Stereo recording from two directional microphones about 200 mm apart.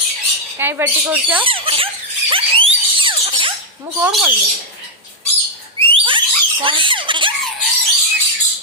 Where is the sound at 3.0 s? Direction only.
25° right (ahead or behind).